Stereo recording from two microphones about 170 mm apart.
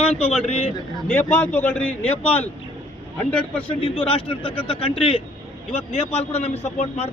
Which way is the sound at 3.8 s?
30° left (ahead or behind).